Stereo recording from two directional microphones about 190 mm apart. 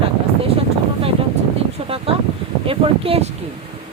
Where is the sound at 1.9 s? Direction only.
30° right (ahead or behind).